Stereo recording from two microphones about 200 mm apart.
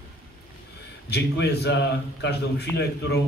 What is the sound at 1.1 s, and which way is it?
A man's voice, 55° left (ahead or behind).